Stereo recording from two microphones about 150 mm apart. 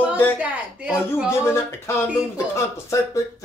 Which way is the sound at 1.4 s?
15° left (ahead or behind).